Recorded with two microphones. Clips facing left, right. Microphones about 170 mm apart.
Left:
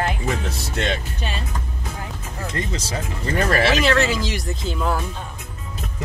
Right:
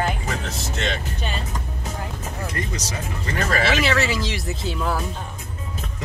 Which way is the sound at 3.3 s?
50° left (ahead or behind).